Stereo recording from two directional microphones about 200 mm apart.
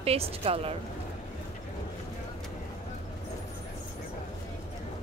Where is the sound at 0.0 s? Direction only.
30° right (ahead or behind).